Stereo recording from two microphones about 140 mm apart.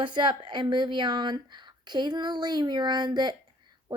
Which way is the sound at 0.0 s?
35° right (ahead or behind).